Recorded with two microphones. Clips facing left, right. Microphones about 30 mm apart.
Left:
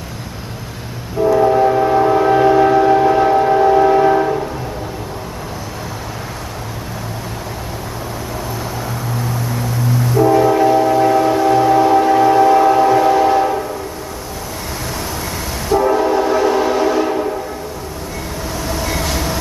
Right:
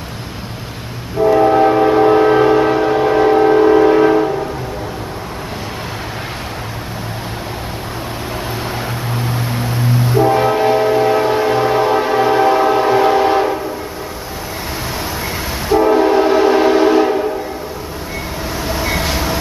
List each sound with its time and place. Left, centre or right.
1.2 s train: right
9.1 s train: right
15.7 s train: right
18.6 s train: right